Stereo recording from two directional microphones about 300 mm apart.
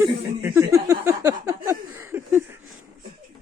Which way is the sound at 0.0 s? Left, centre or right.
Centre.